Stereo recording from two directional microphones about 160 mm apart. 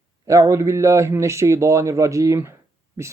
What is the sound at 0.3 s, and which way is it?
Speech, 20° right (ahead or behind).